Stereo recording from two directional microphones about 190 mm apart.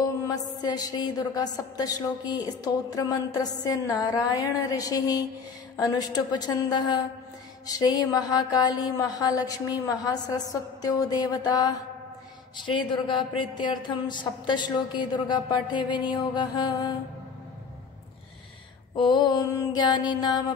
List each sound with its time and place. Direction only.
0.3 s a woman's voice: 20° left (ahead or behind)
18.9 s a woman's voice: 25° left (ahead or behind)